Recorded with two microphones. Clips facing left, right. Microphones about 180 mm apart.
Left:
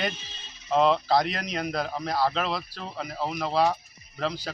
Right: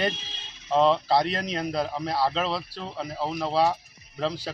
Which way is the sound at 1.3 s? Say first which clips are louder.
Right 2 dB; 30° right (ahead or behind).